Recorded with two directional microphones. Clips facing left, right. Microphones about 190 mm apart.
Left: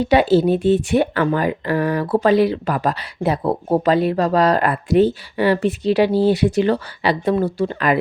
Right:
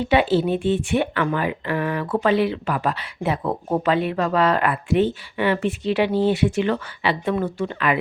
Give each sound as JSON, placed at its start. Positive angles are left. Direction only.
{"t": 0.0, "sound": "speech", "side_deg": 40}